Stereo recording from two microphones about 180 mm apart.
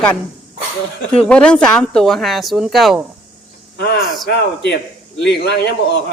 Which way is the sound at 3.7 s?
65° left (ahead or behind).